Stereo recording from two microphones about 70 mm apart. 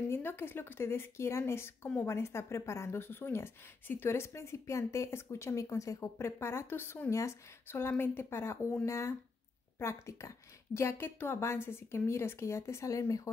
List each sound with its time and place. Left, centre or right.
0.1 s a woman's voice: left
7.1 s speech: left
7.6 s a woman's voice: left